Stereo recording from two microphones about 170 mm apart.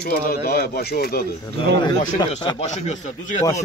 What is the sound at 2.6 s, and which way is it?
Speech, 45° left (ahead or behind).